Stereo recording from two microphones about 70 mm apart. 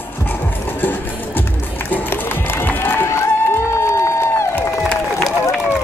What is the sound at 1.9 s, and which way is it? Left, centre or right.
Run, left.